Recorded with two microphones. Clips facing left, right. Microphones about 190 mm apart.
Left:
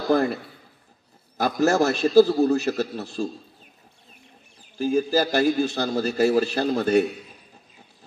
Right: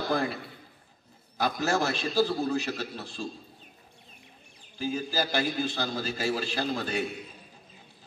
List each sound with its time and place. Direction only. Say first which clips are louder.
1.4 s a man's voice: left 7 dB; 45° left (ahead or behind)
4.7 s a man's voice: left 9 dB; 45° left (ahead or behind)